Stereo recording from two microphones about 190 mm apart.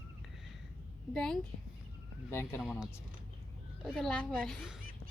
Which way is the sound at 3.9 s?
5° left (ahead or behind).